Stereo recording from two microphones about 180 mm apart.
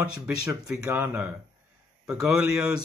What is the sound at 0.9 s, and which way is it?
Speech, 10° right (ahead or behind).